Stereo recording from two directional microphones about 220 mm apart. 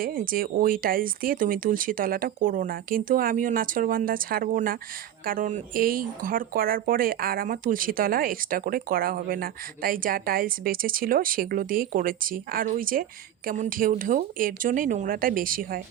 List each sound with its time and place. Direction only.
0.0 s speech: 40° right (ahead or behind)